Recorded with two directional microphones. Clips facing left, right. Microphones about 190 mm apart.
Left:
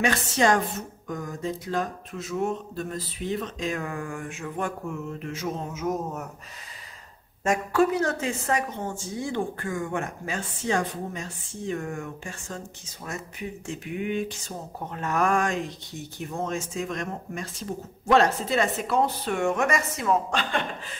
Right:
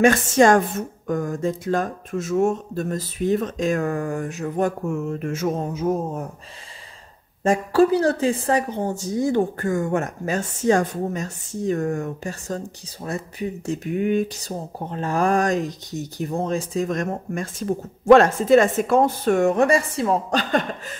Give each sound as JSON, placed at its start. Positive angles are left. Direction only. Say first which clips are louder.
{"t": 0.0, "sound": "speech", "louder": "right 8 dB", "side_deg": -50}
{"t": 7.4, "sound": "a woman's voice", "louder": "right 5 dB", "side_deg": -30}